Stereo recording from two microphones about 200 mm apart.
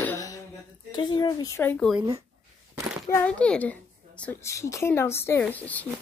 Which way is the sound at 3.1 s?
5° left (ahead or behind).